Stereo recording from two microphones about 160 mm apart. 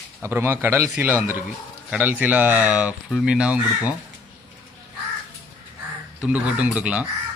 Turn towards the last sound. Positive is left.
turn(degrees=-10)  # may be behind; listen again after turning